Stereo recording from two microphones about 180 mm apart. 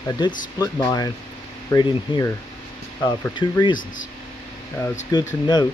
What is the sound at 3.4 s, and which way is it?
Speech, 25° left (ahead or behind).